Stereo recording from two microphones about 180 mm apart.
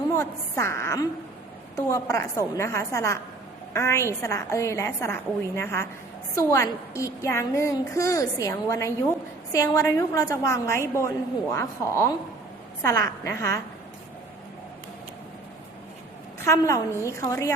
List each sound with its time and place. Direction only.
0.2 s a child's voice: 15° left (ahead or behind)
16.4 s a child's voice: 15° left (ahead or behind)